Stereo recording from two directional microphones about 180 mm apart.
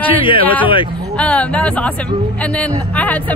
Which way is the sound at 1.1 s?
5° left (ahead or behind).